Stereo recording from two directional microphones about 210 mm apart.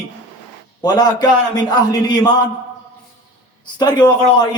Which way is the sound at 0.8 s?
20° left (ahead or behind).